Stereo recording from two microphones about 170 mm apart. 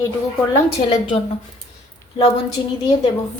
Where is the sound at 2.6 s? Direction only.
30° left (ahead or behind).